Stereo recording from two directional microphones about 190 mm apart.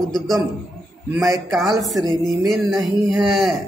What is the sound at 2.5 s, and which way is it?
Speech, centre (ahead or behind).